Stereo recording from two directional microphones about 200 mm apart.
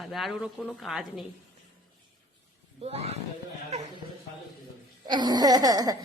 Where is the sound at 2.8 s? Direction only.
30° right (ahead or behind).